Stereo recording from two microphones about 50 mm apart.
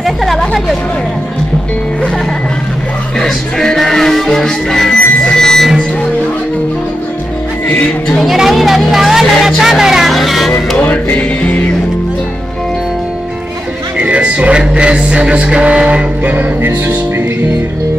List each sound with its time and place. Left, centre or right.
0.0 s vehicle: centre
3.2 s music: centre
8.3 s a sound: centre
10.1 s vehicle: centre
10.8 s music: left
13.9 s music: right
16.3 s music: right